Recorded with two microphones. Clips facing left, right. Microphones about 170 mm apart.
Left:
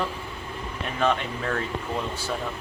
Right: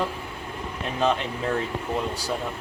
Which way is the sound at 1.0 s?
15° right (ahead or behind).